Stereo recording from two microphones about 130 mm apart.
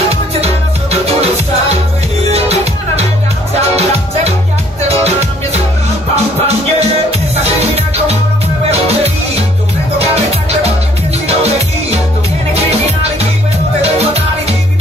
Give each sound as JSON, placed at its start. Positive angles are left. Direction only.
{"t": 2.3, "sound": "music", "side_deg": -55}
{"t": 8.6, "sound": "music", "side_deg": -50}